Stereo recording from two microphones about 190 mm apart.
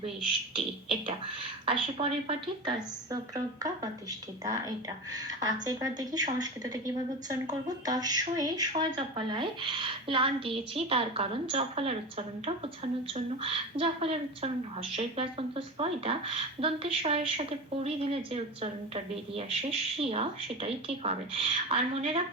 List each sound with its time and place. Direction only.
1.0 s a woman's voice: 25° right (ahead or behind)